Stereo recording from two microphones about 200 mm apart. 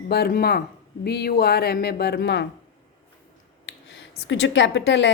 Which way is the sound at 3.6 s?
65° left (ahead or behind).